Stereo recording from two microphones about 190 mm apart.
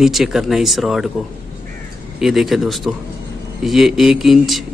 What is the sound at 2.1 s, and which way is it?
Speech, centre (ahead or behind).